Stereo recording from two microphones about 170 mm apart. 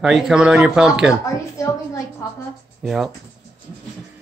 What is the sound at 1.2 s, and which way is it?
A woman's voice, 20° left (ahead or behind).